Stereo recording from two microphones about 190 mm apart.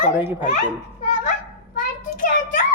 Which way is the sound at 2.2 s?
40° left (ahead or behind).